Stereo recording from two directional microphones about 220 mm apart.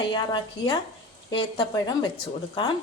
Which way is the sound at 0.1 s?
20° left (ahead or behind).